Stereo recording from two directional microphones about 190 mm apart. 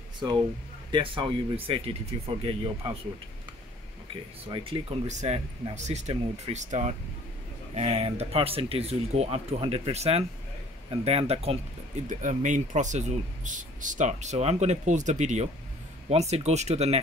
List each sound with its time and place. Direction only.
0.2 s speech: 20° right (ahead or behind)
4.5 s speech: 25° right (ahead or behind)